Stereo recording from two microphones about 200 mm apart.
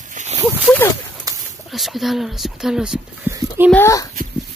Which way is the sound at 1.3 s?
15° right (ahead or behind).